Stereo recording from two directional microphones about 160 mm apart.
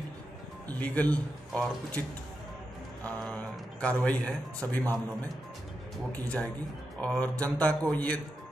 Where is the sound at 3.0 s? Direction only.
5° left (ahead or behind).